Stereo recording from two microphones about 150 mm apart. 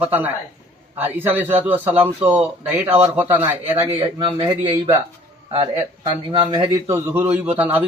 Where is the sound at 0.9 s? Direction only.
15° right (ahead or behind).